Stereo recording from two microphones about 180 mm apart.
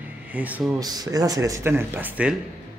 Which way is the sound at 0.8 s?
20° right (ahead or behind).